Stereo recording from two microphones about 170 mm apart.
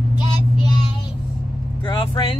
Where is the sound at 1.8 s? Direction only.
30° left (ahead or behind).